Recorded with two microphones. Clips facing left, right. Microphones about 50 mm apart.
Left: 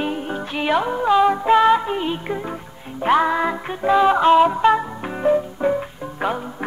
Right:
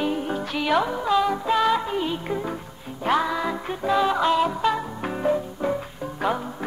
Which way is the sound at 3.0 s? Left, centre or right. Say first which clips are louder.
Left 5 dB; left.